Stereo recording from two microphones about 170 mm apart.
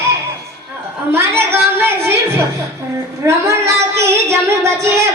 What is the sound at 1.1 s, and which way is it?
Music, 15° right (ahead or behind).